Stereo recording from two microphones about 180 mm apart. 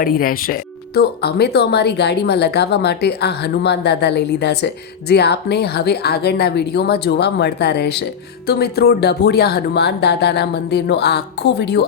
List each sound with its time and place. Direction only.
0.0 s speech: 55° left (ahead or behind)